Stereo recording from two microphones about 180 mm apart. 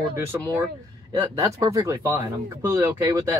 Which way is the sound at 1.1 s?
20° right (ahead or behind).